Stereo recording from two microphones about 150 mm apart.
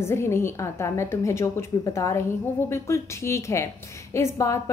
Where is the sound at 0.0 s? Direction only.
15° left (ahead or behind).